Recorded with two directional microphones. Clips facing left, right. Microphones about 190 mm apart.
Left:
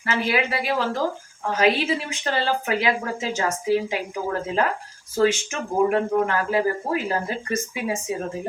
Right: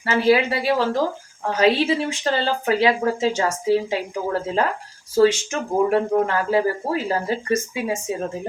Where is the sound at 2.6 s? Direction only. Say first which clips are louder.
Right 5 dB; 30° right (ahead or behind).